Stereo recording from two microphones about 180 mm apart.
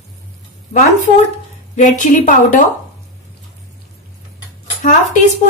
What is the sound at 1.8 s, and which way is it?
Speech, 45° left (ahead or behind).